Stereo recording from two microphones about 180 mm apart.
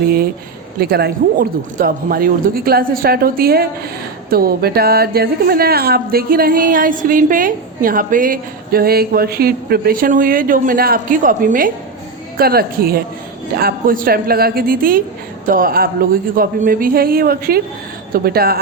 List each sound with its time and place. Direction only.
0.8 s a woman's voice: 60° right (ahead or behind)